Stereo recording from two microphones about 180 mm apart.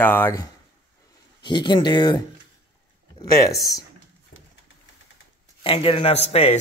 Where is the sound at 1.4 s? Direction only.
25° left (ahead or behind).